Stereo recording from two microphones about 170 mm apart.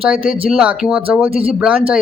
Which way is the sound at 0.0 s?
5° right (ahead or behind).